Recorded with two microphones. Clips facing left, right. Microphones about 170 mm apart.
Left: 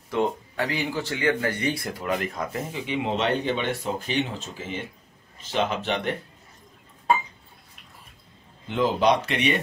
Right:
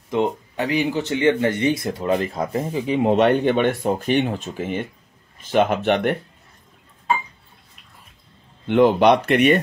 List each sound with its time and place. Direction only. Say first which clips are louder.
0.1 s speech: right 4 dB; 20° right (ahead or behind); by 3.1 s 35° right (ahead or behind)
3.1 s speech: right 9 dB; 55° right (ahead or behind)
8.6 s speech: right 7 dB; 65° right (ahead or behind)